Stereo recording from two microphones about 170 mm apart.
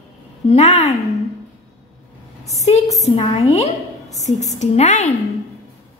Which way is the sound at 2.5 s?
40° left (ahead or behind).